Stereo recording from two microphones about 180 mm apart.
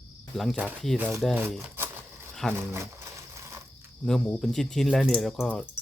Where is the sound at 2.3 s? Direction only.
Centre (ahead or behind).